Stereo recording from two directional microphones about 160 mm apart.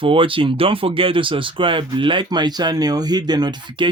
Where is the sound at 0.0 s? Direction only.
35° right (ahead or behind).